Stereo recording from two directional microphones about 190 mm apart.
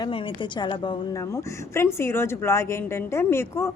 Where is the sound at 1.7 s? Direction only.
15° left (ahead or behind).